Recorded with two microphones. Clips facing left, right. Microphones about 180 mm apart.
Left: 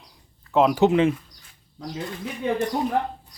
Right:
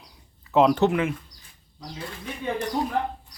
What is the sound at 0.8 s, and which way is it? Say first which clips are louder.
Speech: left 5 dB; 25° left (ahead or behind).